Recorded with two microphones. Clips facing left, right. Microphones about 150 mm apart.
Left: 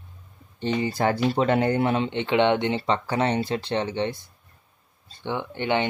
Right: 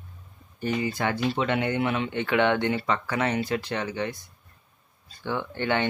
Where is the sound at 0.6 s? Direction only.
30° left (ahead or behind).